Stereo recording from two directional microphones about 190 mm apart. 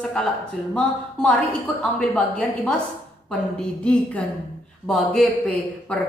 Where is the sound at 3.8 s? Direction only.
5° left (ahead or behind).